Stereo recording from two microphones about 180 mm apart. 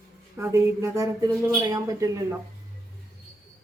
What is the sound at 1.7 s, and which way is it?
Speech, 20° right (ahead or behind).